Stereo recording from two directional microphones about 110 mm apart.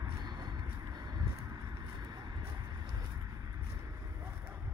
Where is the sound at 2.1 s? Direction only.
40° right (ahead or behind).